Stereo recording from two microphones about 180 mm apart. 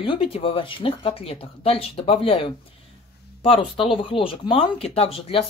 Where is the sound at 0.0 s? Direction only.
30° left (ahead or behind).